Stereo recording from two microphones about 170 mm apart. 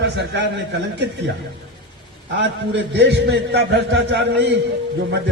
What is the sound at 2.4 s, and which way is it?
A man's voice, 90° right.